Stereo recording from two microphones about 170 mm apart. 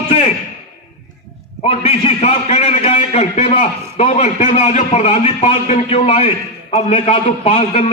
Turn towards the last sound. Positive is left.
turn(degrees=40)  # may be behind; listen again after turning